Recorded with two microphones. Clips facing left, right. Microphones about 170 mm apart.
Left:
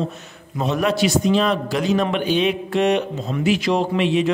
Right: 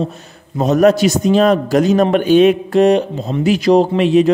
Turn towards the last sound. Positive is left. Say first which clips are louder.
# right 7 dB
turn(degrees=-40)  # may be behind; listen again after turning